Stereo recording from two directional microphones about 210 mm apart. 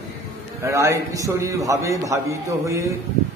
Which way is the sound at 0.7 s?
15° right (ahead or behind).